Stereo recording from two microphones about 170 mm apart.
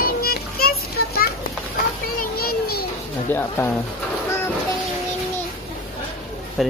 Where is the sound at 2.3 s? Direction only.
65° left (ahead or behind).